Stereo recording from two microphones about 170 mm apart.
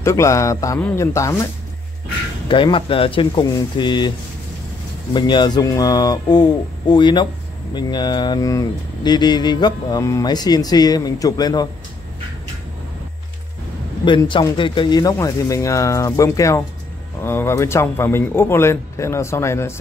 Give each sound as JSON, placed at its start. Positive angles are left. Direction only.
{"t": 0.0, "sound": "a man's voice", "side_deg": 15}
{"t": 2.4, "sound": "speech", "side_deg": 30}
{"t": 5.1, "sound": "speech", "side_deg": 25}
{"t": 14.0, "sound": "a man's voice", "side_deg": 30}